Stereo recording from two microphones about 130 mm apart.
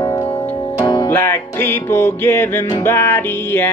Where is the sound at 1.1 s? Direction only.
20° left (ahead or behind).